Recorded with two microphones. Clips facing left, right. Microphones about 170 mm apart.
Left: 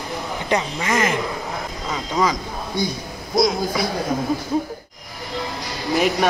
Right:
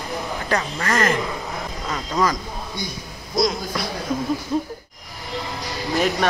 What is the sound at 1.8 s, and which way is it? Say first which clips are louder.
Speech: left 1 dB; 5° left (ahead or behind).